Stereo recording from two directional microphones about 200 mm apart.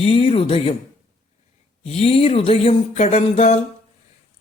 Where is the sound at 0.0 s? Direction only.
30° left (ahead or behind).